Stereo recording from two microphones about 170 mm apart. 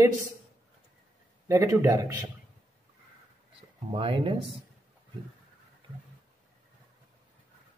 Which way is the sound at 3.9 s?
30° right (ahead or behind).